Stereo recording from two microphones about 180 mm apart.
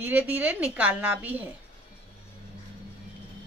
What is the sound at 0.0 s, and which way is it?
A woman's voice, 10° right (ahead or behind).